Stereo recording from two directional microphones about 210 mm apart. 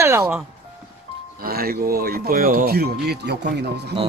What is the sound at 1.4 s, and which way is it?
Speech, 45° right (ahead or behind).